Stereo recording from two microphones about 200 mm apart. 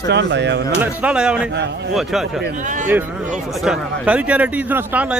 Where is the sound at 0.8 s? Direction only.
5° right (ahead or behind).